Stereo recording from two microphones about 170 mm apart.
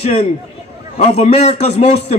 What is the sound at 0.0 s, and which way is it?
A man's voice, 35° left (ahead or behind).